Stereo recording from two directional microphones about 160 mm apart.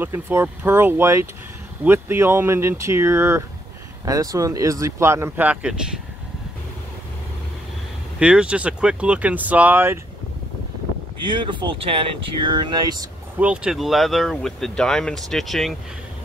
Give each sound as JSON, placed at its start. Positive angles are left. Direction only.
{"t": 0.0, "sound": "speech", "side_deg": -15}
{"t": 8.2, "sound": "speech", "side_deg": -5}
{"t": 11.2, "sound": "speech", "side_deg": -30}
{"t": 13.4, "sound": "speech", "side_deg": -5}